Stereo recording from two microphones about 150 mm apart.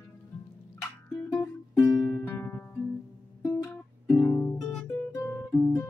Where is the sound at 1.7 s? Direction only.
5° left (ahead or behind).